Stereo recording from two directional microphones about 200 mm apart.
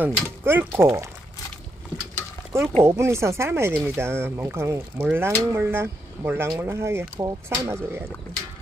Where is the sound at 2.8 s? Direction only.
15° right (ahead or behind).